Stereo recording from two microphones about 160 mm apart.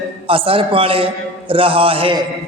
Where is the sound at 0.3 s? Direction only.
35° right (ahead or behind).